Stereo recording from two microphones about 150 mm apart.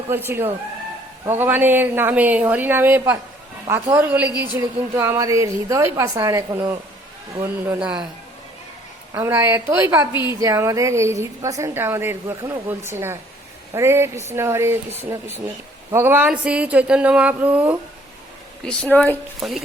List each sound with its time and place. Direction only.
1.3 s a woman's voice: 15° right (ahead or behind)
7.4 s a woman's voice: 10° right (ahead or behind)
9.1 s a woman's voice: 20° right (ahead or behind)
18.6 s a woman's voice: 5° left (ahead or behind)
19.4 s speech: centre (ahead or behind)